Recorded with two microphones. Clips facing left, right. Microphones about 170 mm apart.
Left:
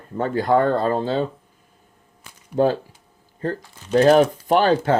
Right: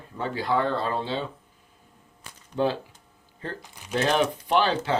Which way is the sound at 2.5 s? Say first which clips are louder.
Left 6 dB; 45° left (ahead or behind).